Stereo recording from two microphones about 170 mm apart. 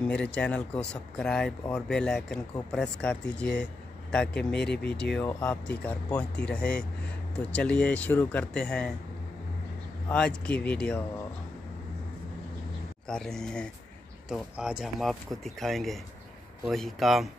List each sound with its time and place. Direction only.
0.1 s speech: 5° left (ahead or behind)
10.0 s speech: 5° left (ahead or behind)
13.1 s speech: 5° left (ahead or behind)